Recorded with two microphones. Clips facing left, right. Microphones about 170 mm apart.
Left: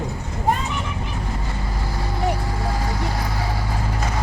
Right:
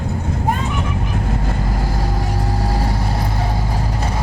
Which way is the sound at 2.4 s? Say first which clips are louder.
Right 4 dB; 40° right (ahead or behind).